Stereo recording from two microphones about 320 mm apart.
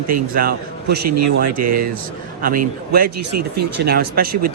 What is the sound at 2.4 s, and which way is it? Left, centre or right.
Speech, right.